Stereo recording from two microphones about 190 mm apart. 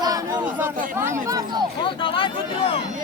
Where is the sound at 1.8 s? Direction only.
25° left (ahead or behind).